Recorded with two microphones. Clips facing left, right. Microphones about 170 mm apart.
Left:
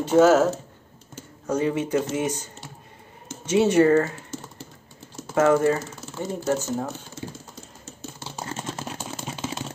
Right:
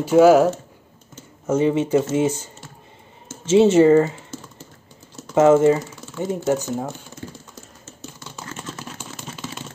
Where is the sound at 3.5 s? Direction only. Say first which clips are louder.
Right 5 dB; 25° right (ahead or behind).